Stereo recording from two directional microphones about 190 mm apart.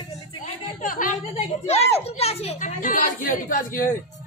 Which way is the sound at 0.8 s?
45° left (ahead or behind).